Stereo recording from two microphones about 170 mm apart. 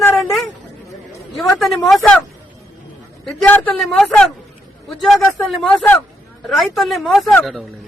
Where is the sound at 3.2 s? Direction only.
10° left (ahead or behind).